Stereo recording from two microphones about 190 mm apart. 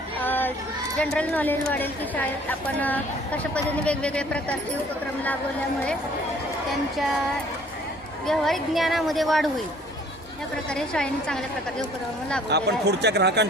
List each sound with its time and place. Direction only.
0.2 s a sound: 10° left (ahead or behind)
0.9 s a woman's voice: 5° left (ahead or behind)
6.9 s a woman's voice: centre (ahead or behind)
8.3 s a woman's voice: centre (ahead or behind)
10.7 s a woman's voice: 5° left (ahead or behind)
12.5 s speech: 60° right (ahead or behind)